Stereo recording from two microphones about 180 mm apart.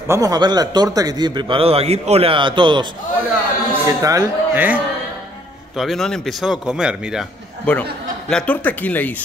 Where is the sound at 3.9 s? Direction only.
20° right (ahead or behind).